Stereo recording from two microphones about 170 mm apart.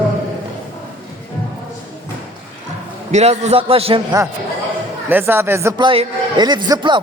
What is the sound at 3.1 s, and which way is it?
Speech, 40° right (ahead or behind).